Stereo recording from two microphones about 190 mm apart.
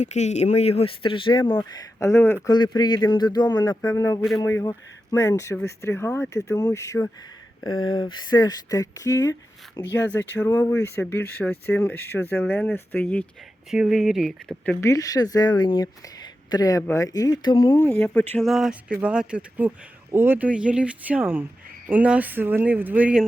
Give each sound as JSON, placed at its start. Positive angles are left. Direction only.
{"t": 0.0, "sound": "speech", "side_deg": 35}
{"t": 13.7, "sound": "speech", "side_deg": -5}